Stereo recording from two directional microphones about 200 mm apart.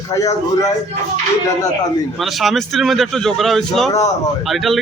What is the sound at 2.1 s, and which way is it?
Speech, centre (ahead or behind).